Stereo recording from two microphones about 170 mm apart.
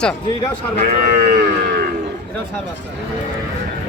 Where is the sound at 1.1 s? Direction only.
50° right (ahead or behind).